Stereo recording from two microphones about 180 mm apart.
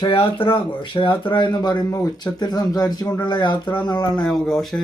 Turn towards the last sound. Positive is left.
turn(degrees=0)  # may be behind; listen again after turning